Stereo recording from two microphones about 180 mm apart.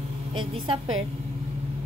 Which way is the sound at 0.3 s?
30° right (ahead or behind).